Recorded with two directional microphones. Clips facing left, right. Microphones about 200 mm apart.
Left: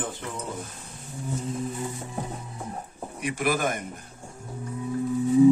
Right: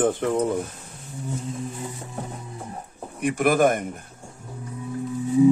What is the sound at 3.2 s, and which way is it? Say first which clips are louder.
Speech: right 7 dB; 55° right (ahead or behind).